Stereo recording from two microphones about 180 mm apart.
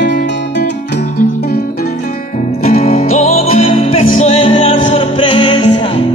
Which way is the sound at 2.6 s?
40° left (ahead or behind).